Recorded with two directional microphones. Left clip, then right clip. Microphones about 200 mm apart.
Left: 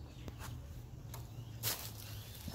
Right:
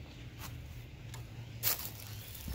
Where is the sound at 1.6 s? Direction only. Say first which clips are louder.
Right 3 dB; 15° right (ahead or behind).